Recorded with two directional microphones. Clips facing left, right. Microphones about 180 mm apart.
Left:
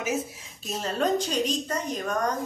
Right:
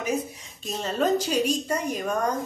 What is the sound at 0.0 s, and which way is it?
Speech, 5° left (ahead or behind).